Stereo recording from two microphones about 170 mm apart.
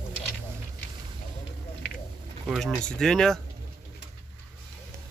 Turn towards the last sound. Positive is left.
turn(degrees=5)  # may be behind; listen again after turning